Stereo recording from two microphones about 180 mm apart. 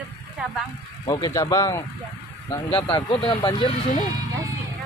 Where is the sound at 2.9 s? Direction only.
25° left (ahead or behind).